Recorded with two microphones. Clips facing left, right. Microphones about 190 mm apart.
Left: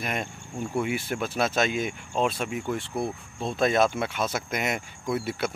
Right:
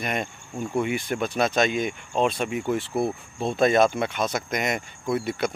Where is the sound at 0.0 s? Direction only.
Centre (ahead or behind).